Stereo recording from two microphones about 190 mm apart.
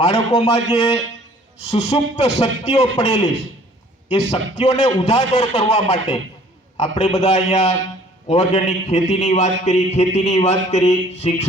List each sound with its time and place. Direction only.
0.0 s a man's voice: 30° left (ahead or behind)